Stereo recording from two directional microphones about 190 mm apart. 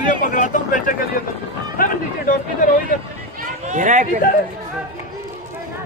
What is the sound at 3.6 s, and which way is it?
Speech, 40° right (ahead or behind).